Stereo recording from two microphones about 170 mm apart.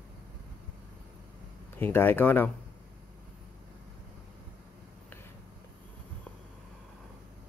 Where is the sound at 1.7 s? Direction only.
10° left (ahead or behind).